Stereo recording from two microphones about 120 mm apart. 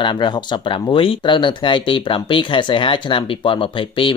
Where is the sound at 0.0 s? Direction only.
40° left (ahead or behind).